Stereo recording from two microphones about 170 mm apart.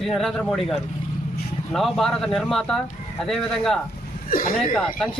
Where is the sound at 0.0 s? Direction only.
Centre (ahead or behind).